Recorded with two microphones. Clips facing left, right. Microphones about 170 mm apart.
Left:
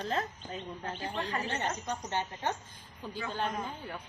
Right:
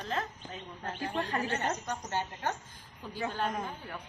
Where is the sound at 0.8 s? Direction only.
40° right (ahead or behind).